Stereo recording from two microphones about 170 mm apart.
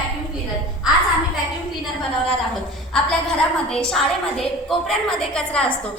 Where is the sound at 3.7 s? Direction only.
5° left (ahead or behind).